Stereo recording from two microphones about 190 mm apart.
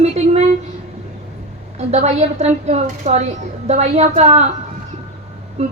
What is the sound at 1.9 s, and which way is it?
A woman's voice, 35° right (ahead or behind).